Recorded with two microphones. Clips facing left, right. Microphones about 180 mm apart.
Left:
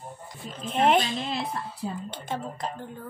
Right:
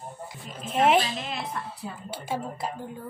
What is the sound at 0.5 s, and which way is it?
A woman's voice, 10° right (ahead or behind).